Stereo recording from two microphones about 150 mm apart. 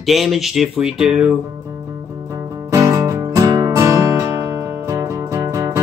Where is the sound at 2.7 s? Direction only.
20° right (ahead or behind).